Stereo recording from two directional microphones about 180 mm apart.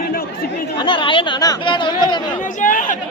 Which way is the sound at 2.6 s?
45° left (ahead or behind).